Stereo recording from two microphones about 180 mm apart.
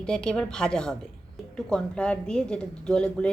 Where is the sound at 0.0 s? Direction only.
5° left (ahead or behind).